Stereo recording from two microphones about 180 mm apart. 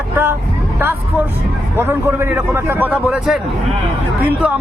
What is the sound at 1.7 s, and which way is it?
Speech, 10° right (ahead or behind).